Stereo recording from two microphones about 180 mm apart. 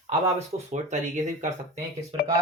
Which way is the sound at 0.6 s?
40° right (ahead or behind).